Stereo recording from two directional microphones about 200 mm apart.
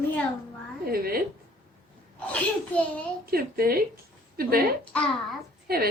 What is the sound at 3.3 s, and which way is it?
Speech, 50° right (ahead or behind).